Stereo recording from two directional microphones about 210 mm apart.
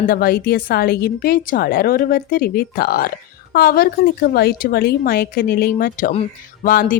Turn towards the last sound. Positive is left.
turn(degrees=40)  # may be behind; listen again after turning